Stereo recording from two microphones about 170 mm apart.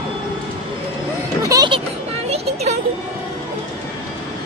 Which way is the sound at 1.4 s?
20° right (ahead or behind).